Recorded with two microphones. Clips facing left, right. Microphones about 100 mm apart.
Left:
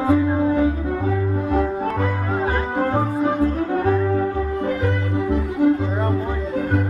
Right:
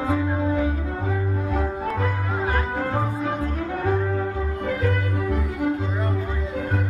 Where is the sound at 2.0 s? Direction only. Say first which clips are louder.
Left 4 dB; 30° left (ahead or behind).